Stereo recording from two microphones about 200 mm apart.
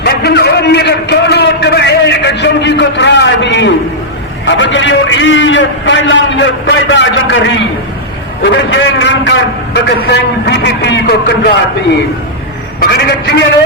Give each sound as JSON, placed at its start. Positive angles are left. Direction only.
{"t": 0.0, "sound": "a sound", "side_deg": 55}
{"t": 4.4, "sound": "a man's voice", "side_deg": 65}
{"t": 13.1, "sound": "a man's voice", "side_deg": 60}